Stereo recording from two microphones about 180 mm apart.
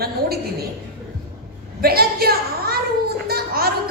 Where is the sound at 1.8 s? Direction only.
60° right (ahead or behind).